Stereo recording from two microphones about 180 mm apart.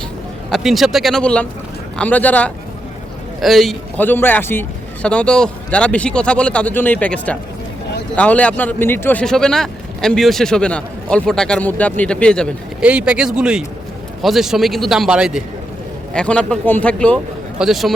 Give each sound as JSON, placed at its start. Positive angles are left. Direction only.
{"t": 0.5, "sound": "speech", "side_deg": 0}
{"t": 12.8, "sound": "speech", "side_deg": -5}